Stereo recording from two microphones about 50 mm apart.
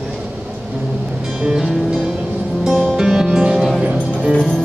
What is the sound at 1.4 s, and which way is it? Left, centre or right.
Music, centre.